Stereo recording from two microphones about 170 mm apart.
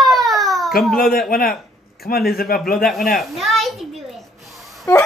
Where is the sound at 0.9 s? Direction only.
60° left (ahead or behind).